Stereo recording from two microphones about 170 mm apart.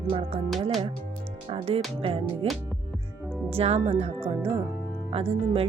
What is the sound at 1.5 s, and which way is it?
Speech, 35° right (ahead or behind).